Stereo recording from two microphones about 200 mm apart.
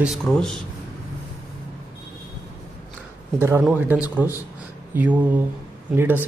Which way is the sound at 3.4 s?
10° right (ahead or behind).